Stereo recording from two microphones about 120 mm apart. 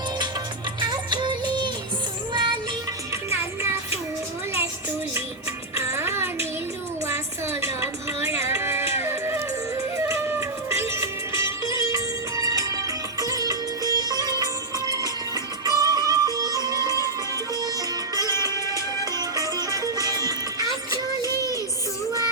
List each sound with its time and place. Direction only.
0.8 s music of bollywood: 40° right (ahead or behind)
2.3 s music: 40° right (ahead or behind)
3.2 s music: 20° right (ahead or behind)
5.8 s music: 20° right (ahead or behind)